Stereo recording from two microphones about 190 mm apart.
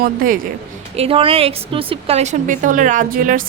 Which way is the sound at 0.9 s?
30° right (ahead or behind).